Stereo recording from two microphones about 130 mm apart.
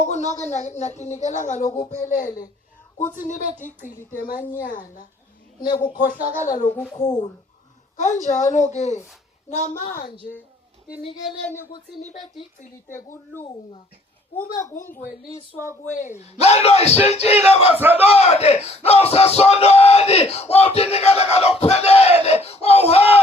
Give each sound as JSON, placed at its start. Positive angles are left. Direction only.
{"t": 0.0, "sound": "speech", "side_deg": 65}
{"t": 2.0, "sound": "a woman's voice", "side_deg": 90}
{"t": 3.2, "sound": "a woman's voice", "side_deg": 75}
{"t": 3.8, "sound": "a woman's voice", "side_deg": 90}
{"t": 6.3, "sound": "speech", "side_deg": 80}
{"t": 7.9, "sound": "a woman's voice", "side_deg": 70}
{"t": 11.7, "sound": "speech", "side_deg": 40}
{"t": 14.5, "sound": "speech", "side_deg": 20}
{"t": 16.0, "sound": "speech", "side_deg": 65}
{"t": 17.7, "sound": "a man's voice", "side_deg": -15}
{"t": 18.0, "sound": "speech", "side_deg": 50}